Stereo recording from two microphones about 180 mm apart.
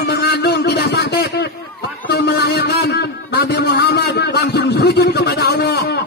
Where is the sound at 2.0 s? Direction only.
70° left (ahead or behind).